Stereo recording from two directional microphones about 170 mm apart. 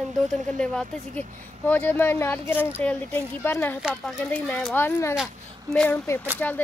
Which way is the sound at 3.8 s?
5° right (ahead or behind).